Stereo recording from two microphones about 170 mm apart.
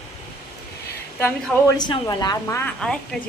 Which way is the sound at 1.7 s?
25° left (ahead or behind).